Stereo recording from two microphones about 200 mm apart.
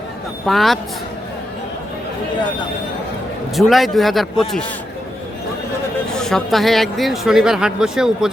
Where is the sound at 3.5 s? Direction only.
Centre (ahead or behind).